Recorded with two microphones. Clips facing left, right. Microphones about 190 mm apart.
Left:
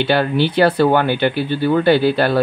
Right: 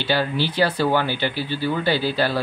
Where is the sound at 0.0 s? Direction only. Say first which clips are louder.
Left 6 dB; 60° left (ahead or behind).